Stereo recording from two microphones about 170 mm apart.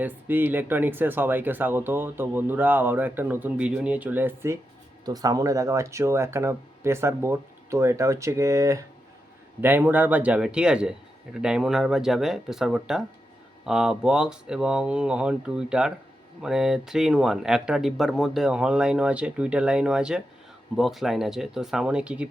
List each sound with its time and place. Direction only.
0.0 s speech: 10° right (ahead or behind)
5.0 s speech: 20° right (ahead or behind)